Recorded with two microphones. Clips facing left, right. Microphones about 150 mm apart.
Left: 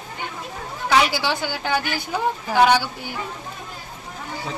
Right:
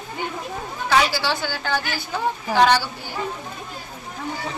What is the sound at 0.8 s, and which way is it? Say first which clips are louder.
A woman's voice: left 1 dB; 15° left (ahead or behind).